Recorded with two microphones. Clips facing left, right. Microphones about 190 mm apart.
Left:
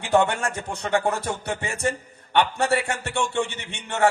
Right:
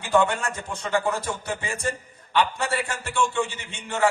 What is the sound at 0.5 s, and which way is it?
A man's voice, 65° left (ahead or behind).